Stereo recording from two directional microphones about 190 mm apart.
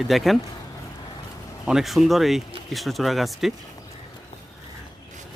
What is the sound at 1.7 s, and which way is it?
Speech, centre (ahead or behind).